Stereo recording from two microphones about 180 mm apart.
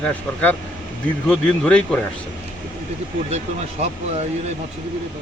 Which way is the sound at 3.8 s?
40° right (ahead or behind).